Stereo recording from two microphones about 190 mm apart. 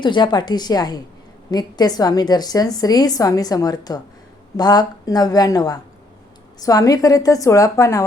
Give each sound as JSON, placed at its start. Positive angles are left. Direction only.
{"t": 0.0, "sound": "a woman's voice", "side_deg": 25}